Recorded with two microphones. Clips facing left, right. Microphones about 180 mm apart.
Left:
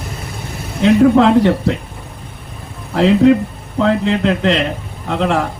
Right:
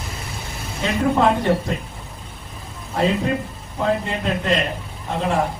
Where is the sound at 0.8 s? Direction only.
75° left (ahead or behind).